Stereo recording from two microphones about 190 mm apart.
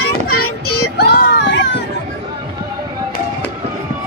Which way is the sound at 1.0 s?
60° left (ahead or behind).